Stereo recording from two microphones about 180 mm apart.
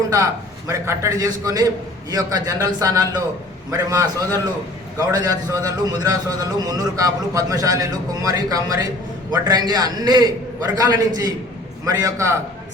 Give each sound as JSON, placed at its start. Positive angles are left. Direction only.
{"t": 0.7, "sound": "a man's voice", "side_deg": -15}